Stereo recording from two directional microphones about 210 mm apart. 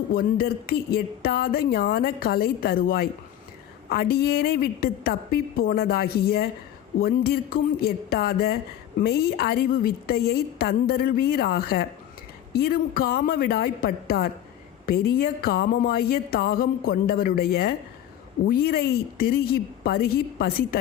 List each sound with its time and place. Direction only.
0.1 s a woman's voice: 45° left (ahead or behind)